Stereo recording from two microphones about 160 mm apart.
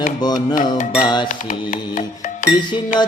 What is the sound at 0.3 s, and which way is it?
Music, 55° left (ahead or behind).